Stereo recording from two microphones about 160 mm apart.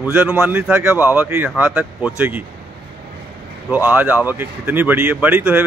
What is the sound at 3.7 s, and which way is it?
A man's voice, 10° right (ahead or behind).